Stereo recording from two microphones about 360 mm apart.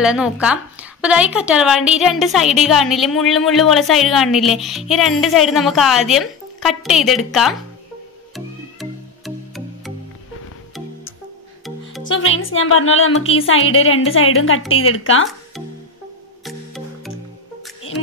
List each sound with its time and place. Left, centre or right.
0.0 s a woman's voice: centre
8.7 s music: centre
12.1 s a woman's voice: left
16.4 s music: centre